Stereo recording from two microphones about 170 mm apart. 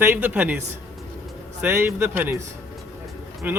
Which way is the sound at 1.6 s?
15° right (ahead or behind).